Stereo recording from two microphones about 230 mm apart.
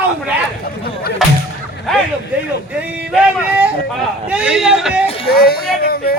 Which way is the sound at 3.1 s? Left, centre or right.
Centre.